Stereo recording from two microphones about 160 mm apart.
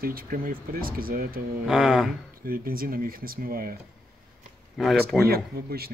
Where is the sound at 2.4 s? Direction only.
65° right (ahead or behind).